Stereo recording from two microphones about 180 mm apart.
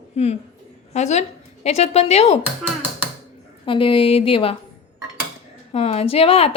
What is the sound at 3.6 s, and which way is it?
Speech, 30° left (ahead or behind).